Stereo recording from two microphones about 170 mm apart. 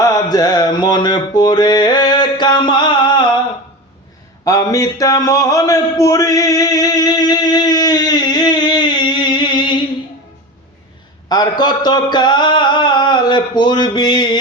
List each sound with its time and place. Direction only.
0.0 s mantra: 20° left (ahead or behind)
4.4 s a sound: 20° left (ahead or behind)
11.3 s speech: 25° left (ahead or behind)